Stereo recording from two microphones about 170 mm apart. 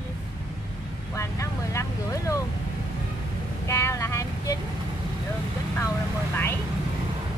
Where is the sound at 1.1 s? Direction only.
15° left (ahead or behind).